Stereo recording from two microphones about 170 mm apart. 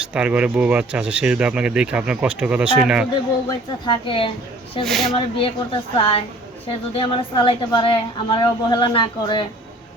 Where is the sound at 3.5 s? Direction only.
30° left (ahead or behind).